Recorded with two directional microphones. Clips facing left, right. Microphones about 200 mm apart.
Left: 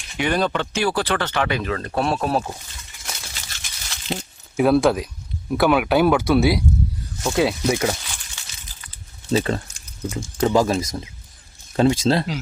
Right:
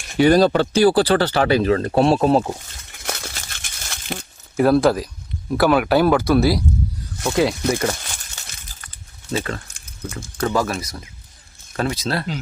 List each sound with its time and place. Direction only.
0.2 s speech: 35° right (ahead or behind)
2.9 s a sound: 55° right (ahead or behind)
4.5 s speech: centre (ahead or behind)
7.7 s speech: 10° left (ahead or behind)
8.0 s a sound: 45° right (ahead or behind)
10.1 s speech: 15° left (ahead or behind)